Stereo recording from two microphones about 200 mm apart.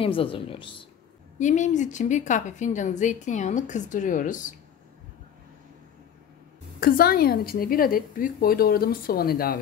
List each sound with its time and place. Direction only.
0.0 s speech: 25° left (ahead or behind)
1.4 s a woman's voice: 35° left (ahead or behind)
6.8 s a woman's voice: 50° left (ahead or behind)